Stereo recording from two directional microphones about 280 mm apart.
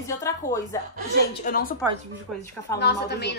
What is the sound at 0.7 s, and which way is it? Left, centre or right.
Speech, centre.